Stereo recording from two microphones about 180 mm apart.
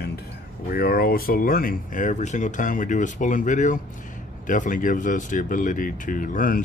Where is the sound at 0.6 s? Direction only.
55° left (ahead or behind).